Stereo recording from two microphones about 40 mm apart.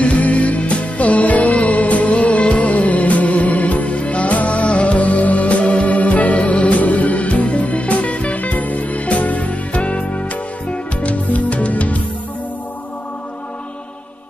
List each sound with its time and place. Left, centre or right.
0.0 s music: left